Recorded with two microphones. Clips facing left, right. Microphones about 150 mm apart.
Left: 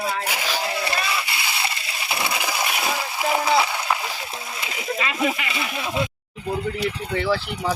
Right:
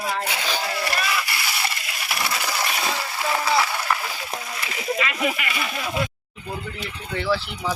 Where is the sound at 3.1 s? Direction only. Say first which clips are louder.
Left 2 dB; 15° left (ahead or behind).